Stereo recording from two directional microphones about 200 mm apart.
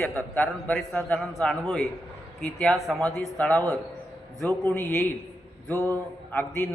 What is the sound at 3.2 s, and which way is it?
Speech, 10° left (ahead or behind).